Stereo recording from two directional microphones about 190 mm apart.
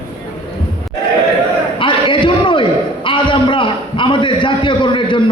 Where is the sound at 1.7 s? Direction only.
25° left (ahead or behind).